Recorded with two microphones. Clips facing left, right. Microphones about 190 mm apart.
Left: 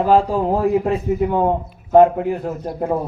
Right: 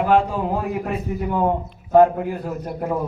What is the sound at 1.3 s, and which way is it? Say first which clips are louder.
A man's voice: left 3 dB; 20° left (ahead or behind).